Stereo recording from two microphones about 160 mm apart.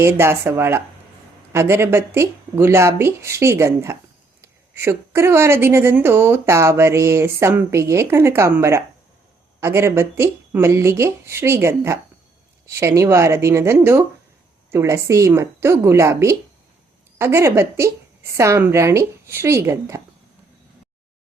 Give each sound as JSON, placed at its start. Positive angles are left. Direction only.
{"t": 0.0, "sound": "a woman's voice", "side_deg": -15}